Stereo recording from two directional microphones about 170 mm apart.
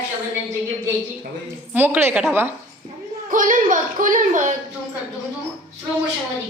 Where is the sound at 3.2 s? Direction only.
50° right (ahead or behind).